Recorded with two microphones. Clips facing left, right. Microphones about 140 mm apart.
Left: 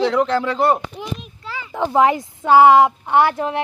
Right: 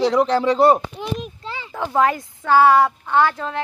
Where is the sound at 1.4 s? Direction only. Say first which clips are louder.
Even; 25° right (ahead or behind).